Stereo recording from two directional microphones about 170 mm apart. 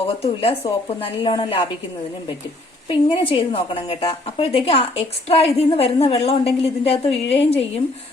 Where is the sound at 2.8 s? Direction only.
30° left (ahead or behind).